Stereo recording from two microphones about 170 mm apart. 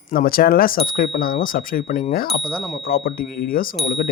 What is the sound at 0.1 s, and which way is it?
Speech, 60° left (ahead or behind).